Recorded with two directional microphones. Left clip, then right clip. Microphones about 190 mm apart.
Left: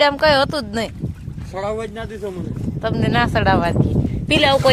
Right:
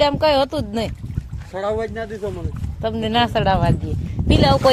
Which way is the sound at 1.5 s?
60° left (ahead or behind).